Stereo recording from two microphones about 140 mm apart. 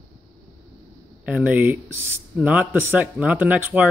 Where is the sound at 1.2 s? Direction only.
10° right (ahead or behind).